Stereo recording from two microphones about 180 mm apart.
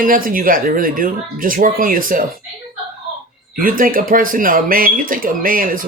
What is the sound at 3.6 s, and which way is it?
Speech, 50° right (ahead or behind).